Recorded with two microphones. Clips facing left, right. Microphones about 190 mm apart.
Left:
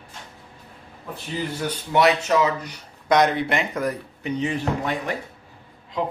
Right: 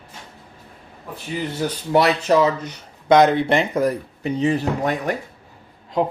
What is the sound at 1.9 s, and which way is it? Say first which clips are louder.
Speech: right 2 dB; 35° right (ahead or behind).